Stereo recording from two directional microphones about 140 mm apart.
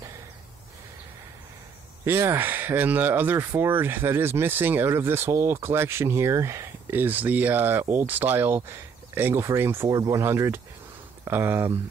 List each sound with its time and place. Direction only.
2.0 s speech: 15° right (ahead or behind)